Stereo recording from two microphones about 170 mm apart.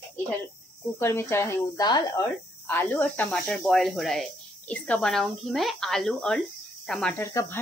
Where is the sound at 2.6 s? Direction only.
10° left (ahead or behind).